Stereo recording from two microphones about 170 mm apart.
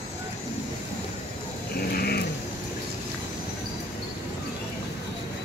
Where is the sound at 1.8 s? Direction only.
65° left (ahead or behind).